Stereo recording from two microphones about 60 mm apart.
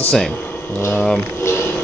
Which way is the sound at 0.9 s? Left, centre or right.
Centre.